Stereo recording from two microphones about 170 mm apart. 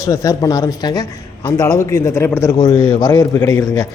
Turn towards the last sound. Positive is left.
turn(degrees=20)  # may be behind; listen again after turning